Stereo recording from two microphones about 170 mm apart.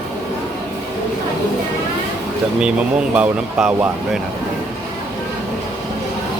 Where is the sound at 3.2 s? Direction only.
10° right (ahead or behind).